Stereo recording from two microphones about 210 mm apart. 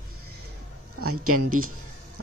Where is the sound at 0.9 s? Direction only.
90° right.